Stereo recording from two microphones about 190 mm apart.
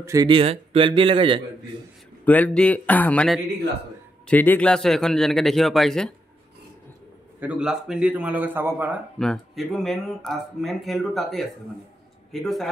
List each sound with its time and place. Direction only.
0.0 s speech: 20° right (ahead or behind)
2.2 s speech: 10° left (ahead or behind)
7.3 s a man's voice: 5° right (ahead or behind)
9.2 s speech: centre (ahead or behind)